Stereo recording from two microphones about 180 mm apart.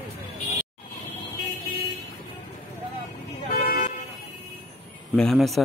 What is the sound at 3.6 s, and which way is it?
Vehicle, 50° left (ahead or behind).